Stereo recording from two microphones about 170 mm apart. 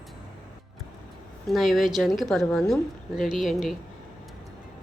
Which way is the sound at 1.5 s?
Centre (ahead or behind).